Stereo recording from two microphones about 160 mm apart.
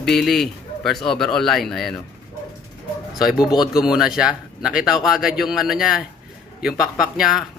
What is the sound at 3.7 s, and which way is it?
Speech, 5° right (ahead or behind).